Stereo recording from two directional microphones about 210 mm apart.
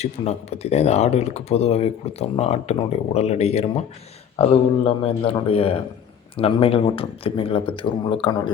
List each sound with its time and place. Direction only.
0.0 s speech: 30° left (ahead or behind)